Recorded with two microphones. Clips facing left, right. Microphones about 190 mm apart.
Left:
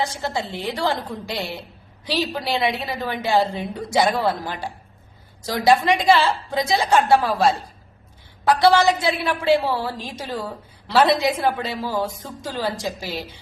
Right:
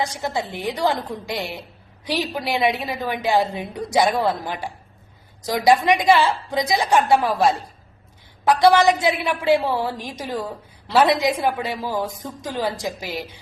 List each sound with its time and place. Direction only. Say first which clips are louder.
0.0 s a woman's voice: even; 15° right (ahead or behind)
5.6 s a woman's voice: even; 15° right (ahead or behind)
8.4 s a woman's voice: right 1 dB; 20° right (ahead or behind)